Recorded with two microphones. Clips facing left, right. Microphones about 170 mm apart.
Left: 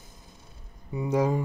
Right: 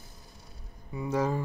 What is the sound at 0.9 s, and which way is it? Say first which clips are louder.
Speech: left 4 dB; 15° left (ahead or behind).